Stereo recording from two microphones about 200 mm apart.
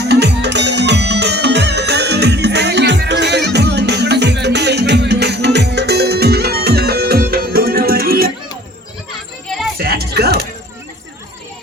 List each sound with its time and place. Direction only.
0.0 s music: 55° right (ahead or behind)
9.7 s music: 50° right (ahead or behind)